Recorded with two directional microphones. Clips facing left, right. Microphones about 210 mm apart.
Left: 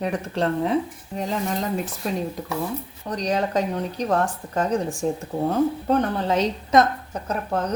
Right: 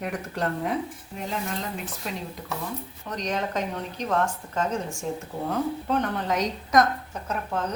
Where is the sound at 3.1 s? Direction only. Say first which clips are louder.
Left 5 dB; 35° left (ahead or behind).